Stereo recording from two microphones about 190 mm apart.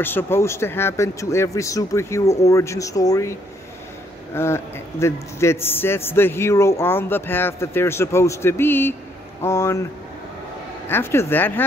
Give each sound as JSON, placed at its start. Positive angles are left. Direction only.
{"t": 0.0, "sound": "speech", "side_deg": 10}
{"t": 10.9, "sound": "speech", "side_deg": 10}